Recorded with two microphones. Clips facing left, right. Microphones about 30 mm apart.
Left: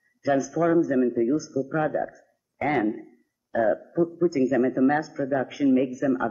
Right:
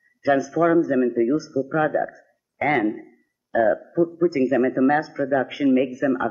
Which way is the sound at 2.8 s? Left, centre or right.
Centre.